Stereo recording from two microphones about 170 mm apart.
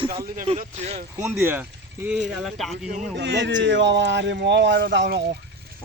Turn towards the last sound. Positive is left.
turn(degrees=-85)